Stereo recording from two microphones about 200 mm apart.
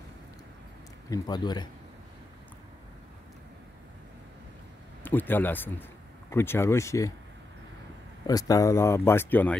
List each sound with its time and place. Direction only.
1.1 s speech: 20° left (ahead or behind)
5.0 s speech: 10° left (ahead or behind)
8.3 s speech: 20° left (ahead or behind)